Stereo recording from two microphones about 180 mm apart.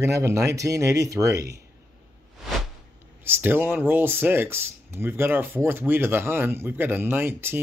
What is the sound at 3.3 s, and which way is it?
Speech, 10° right (ahead or behind).